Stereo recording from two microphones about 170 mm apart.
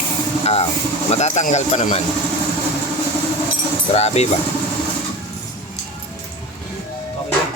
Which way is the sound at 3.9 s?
40° left (ahead or behind).